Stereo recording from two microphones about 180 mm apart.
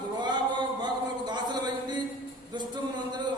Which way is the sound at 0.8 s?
25° right (ahead or behind).